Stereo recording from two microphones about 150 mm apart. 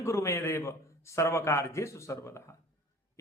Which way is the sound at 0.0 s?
20° left (ahead or behind).